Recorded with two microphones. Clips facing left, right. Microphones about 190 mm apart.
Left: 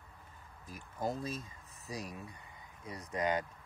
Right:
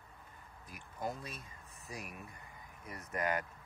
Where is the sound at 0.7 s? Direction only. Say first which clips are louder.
Left 4 dB; 35° left (ahead or behind).